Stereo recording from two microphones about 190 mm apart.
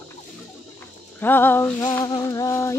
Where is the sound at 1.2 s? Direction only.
10° left (ahead or behind).